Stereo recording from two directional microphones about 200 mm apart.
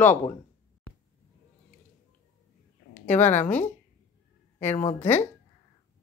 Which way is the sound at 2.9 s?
10° left (ahead or behind).